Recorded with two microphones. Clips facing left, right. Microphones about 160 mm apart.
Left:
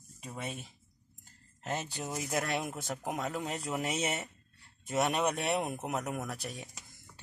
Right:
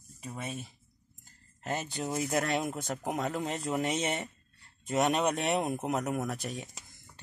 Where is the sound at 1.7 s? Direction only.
10° right (ahead or behind).